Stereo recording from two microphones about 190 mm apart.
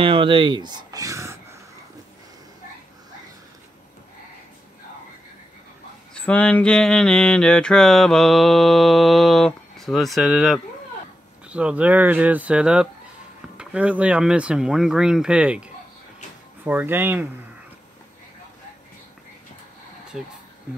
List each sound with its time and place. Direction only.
0.0 s speech: 30° right (ahead or behind)
6.1 s mantra: 5° left (ahead or behind)
11.4 s speech: 5° right (ahead or behind)
13.6 s mantra: 5° right (ahead or behind)
16.6 s speech: 10° right (ahead or behind)
20.1 s mantra: 5° right (ahead or behind)